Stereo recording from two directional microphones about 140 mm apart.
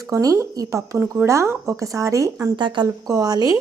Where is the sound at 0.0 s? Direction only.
25° right (ahead or behind).